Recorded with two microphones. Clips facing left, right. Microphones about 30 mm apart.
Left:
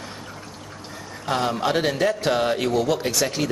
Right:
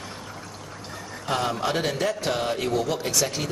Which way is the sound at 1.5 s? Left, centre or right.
Centre.